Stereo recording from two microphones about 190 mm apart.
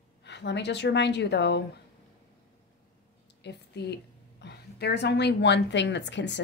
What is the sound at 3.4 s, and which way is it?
A woman's voice, 60° left (ahead or behind).